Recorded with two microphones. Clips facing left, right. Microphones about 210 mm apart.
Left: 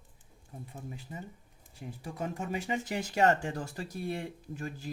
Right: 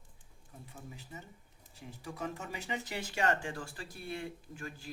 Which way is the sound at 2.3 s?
45° left (ahead or behind).